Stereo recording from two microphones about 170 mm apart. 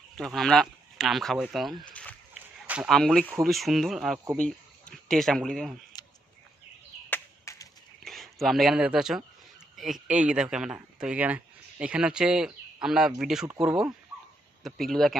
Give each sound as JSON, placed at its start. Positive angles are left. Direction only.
{"t": 0.2, "sound": "speech", "side_deg": 0}
{"t": 2.6, "sound": "speech", "side_deg": -5}
{"t": 7.1, "sound": "a sound", "side_deg": 20}
{"t": 8.0, "sound": "speech", "side_deg": 0}
{"t": 14.6, "sound": "speech", "side_deg": 0}